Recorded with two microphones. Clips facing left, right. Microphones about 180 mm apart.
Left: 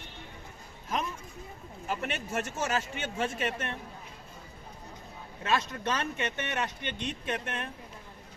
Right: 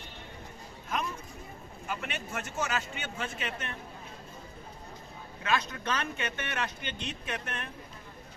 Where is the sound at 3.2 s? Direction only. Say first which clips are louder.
Left 6 dB; 45° left (ahead or behind).